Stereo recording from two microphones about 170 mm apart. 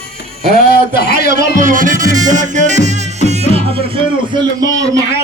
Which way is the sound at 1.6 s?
50° right (ahead or behind).